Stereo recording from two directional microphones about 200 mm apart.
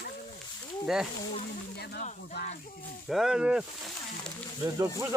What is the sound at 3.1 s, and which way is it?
Speech, 5° right (ahead or behind).